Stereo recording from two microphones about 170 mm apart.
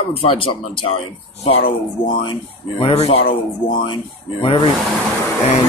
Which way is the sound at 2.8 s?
35° left (ahead or behind).